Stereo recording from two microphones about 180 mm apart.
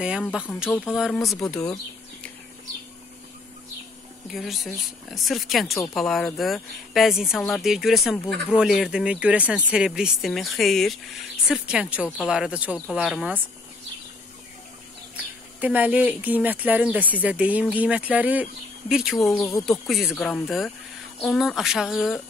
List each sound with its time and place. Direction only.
0.0 s speech: 5° right (ahead or behind)
4.3 s speech: centre (ahead or behind)
15.6 s speech: 10° right (ahead or behind)
19.3 s speech: 15° left (ahead or behind)
19.9 s speech: centre (ahead or behind)